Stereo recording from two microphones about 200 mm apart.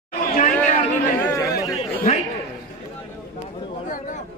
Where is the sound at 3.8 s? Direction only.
40° left (ahead or behind).